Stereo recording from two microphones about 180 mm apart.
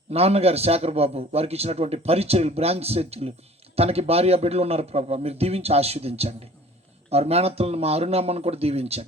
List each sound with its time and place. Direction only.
0.1 s a man's voice: 35° right (ahead or behind)